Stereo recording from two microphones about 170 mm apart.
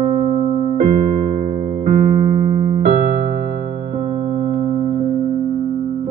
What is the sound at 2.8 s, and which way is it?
Electric piano, 50° right (ahead or behind).